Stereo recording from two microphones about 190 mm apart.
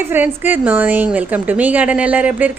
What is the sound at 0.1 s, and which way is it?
A woman's voice, 10° right (ahead or behind).